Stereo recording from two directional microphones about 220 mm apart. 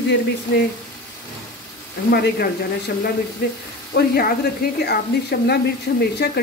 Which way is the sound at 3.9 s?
45° left (ahead or behind).